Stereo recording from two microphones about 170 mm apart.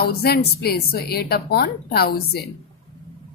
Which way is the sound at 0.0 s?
65° left (ahead or behind).